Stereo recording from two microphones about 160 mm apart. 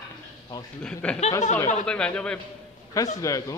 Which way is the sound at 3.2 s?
20° left (ahead or behind).